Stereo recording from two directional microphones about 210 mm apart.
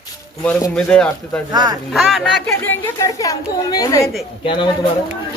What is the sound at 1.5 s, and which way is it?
Speech, 20° right (ahead or behind).